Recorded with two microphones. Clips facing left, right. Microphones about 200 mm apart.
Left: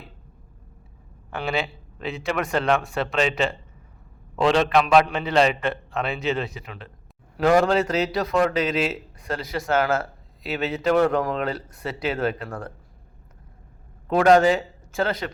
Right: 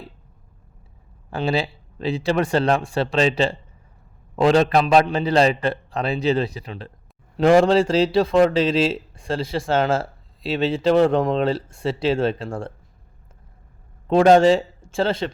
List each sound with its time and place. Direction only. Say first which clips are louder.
1.3 s a man's voice: right 4 dB; 30° right (ahead or behind)
14.1 s a man's voice: right 3 dB; 25° right (ahead or behind)